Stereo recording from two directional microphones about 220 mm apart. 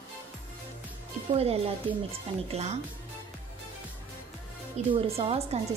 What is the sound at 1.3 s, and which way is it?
Speech, 25° right (ahead or behind).